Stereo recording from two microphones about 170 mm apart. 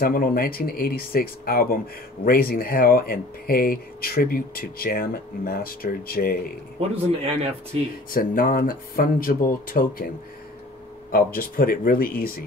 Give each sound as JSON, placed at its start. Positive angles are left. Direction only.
{"t": 0.0, "sound": "speech", "side_deg": 60}
{"t": 6.8, "sound": "speech", "side_deg": -35}
{"t": 8.1, "sound": "speech", "side_deg": 55}